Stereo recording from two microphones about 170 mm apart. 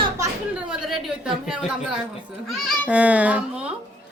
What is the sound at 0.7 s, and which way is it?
A woman's voice, 5° right (ahead or behind).